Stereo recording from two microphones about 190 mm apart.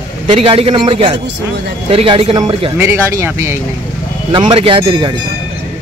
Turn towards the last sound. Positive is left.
turn(degrees=-30)  # may be behind; listen again after turning